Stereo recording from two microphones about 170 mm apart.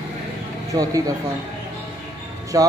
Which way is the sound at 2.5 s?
20° right (ahead or behind).